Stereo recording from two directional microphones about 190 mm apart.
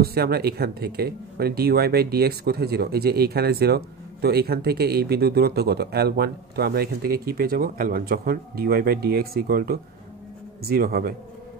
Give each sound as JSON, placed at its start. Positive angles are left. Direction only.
{"t": 0.0, "sound": "speech", "side_deg": -55}